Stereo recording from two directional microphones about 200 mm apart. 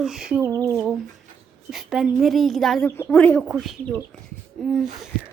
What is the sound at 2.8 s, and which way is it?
Speech, 10° left (ahead or behind).